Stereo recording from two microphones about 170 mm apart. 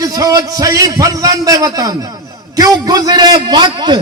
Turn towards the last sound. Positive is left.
turn(degrees=-25)  # may be behind; listen again after turning